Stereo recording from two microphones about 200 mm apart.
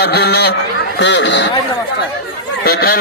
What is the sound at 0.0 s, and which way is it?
A man's voice, 55° left (ahead or behind).